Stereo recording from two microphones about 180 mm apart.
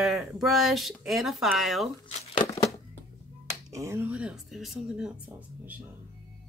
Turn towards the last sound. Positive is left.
turn(degrees=-5)  # may be behind; listen again after turning